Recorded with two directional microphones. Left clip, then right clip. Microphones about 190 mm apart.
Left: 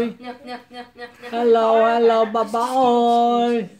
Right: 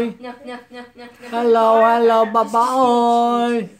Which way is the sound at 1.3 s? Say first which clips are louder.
Right 2 dB; 5° right (ahead or behind).